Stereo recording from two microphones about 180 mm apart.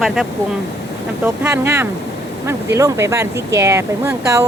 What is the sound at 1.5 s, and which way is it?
Speech, 15° right (ahead or behind).